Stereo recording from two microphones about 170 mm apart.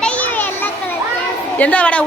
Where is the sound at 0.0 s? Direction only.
10° left (ahead or behind).